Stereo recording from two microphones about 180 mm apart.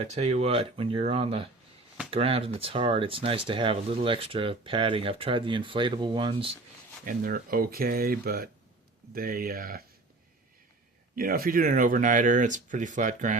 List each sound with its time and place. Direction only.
0.0 s speech: 35° right (ahead or behind)
7.0 s speech: 50° right (ahead or behind)
11.1 s speech: 55° right (ahead or behind)